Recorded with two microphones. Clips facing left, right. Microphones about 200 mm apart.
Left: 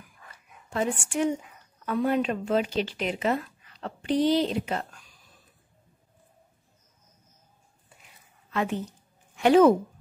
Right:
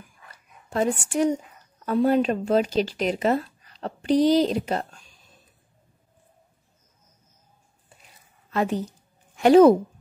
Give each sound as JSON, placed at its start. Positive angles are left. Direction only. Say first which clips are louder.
{"t": 0.7, "sound": "speech", "louder": "right 4 dB", "side_deg": -40}
{"t": 8.5, "sound": "a woman's voice", "louder": "right 4 dB", "side_deg": -35}